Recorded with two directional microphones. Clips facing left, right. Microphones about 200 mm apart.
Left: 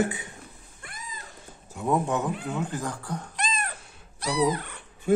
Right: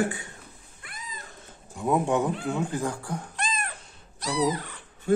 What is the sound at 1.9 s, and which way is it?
Speech, 15° right (ahead or behind).